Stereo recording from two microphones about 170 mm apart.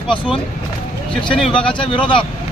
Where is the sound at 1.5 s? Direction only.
30° left (ahead or behind).